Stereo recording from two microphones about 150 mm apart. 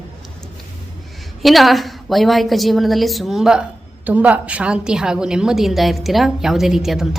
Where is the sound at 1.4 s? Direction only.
Centre (ahead or behind).